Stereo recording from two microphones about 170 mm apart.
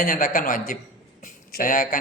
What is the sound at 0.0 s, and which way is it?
A man's voice, 55° left (ahead or behind).